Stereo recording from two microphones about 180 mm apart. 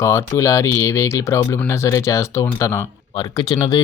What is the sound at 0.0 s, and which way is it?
Speech, 15° left (ahead or behind).